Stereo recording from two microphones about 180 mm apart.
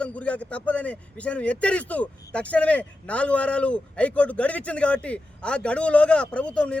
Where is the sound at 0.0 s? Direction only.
5° left (ahead or behind).